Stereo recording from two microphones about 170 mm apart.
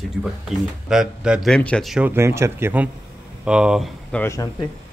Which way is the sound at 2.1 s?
15° right (ahead or behind).